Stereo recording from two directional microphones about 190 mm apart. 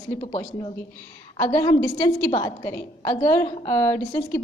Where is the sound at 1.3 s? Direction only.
15° left (ahead or behind).